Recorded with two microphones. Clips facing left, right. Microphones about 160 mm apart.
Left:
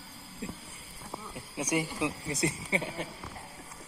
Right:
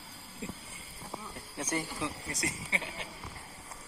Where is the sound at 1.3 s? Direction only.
10° left (ahead or behind).